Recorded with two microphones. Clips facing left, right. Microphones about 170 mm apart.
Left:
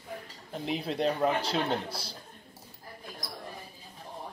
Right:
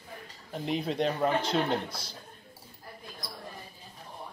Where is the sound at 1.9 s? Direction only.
30° left (ahead or behind).